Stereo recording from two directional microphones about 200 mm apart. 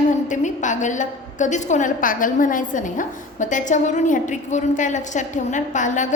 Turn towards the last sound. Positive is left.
turn(degrees=40)  # may be behind; listen again after turning